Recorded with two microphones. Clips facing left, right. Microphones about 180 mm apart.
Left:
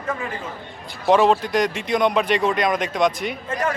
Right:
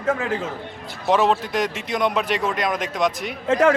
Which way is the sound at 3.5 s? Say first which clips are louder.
Right 9 dB; 90° right.